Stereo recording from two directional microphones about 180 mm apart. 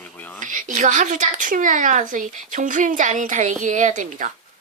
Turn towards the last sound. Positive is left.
turn(degrees=-45)  # may be behind; listen again after turning